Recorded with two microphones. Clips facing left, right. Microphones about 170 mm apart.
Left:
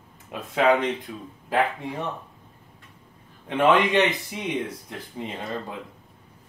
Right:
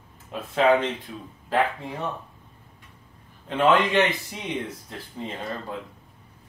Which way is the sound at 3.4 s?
15° left (ahead or behind).